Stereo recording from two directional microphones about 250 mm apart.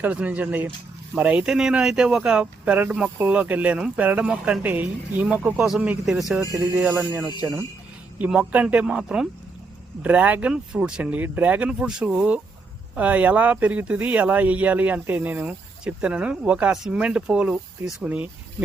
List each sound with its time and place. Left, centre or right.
0.0 s speech: centre